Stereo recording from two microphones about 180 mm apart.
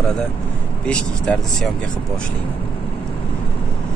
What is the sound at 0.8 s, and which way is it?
Speech, 5° left (ahead or behind).